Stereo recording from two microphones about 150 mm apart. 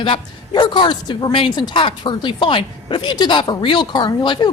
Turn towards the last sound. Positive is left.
turn(degrees=30)  # may be behind; listen again after turning